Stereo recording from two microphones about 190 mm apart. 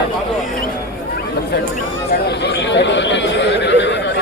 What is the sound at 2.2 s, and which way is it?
Chatter, 65° left (ahead or behind).